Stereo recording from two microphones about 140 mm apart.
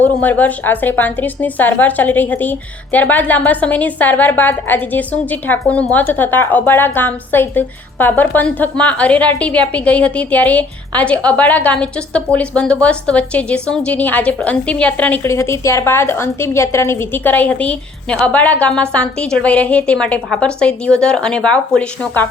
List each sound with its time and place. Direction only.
0.0 s a woman's voice: 10° left (ahead or behind)